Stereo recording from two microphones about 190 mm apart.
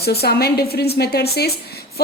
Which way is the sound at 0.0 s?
55° left (ahead or behind).